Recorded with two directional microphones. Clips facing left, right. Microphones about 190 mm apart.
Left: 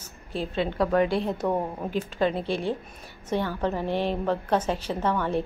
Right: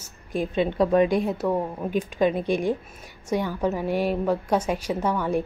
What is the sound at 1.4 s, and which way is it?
Speech, 5° right (ahead or behind).